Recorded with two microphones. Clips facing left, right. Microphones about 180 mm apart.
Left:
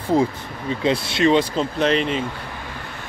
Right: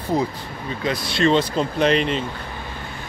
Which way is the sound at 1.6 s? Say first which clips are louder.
Right 1 dB; centre (ahead or behind).